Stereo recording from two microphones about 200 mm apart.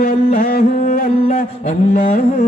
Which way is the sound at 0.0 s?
45° left (ahead or behind).